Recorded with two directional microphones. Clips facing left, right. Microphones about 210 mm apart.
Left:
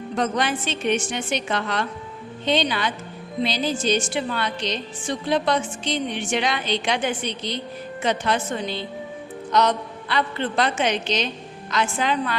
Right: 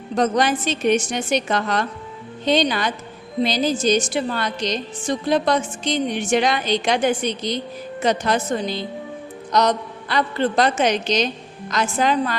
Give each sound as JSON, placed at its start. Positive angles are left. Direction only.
{"t": 0.2, "sound": "a woman's voice", "side_deg": -40}